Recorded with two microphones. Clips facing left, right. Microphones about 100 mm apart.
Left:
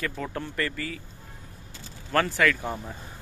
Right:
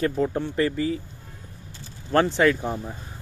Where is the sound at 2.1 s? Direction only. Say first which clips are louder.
Right 4 dB; 25° right (ahead or behind).